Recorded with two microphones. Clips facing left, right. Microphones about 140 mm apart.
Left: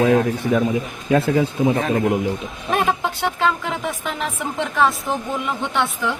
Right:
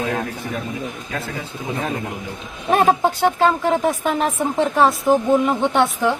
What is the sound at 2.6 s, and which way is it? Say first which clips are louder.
Speech: right 5 dB; 40° right (ahead or behind).